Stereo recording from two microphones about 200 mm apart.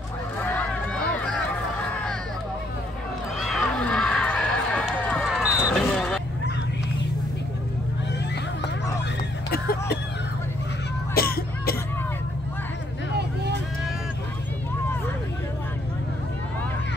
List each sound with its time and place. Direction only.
0.4 s honk: 5° left (ahead or behind)
3.3 s run: centre (ahead or behind)
5.9 s fowl: 5° left (ahead or behind)
9.5 s a sound: 50° left (ahead or behind)
11.1 s cough: 50° left (ahead or behind)